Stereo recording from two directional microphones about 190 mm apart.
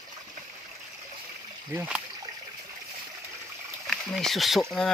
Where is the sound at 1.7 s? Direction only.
10° right (ahead or behind).